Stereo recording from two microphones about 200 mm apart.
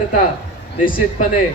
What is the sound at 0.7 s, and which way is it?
Speech, 40° left (ahead or behind).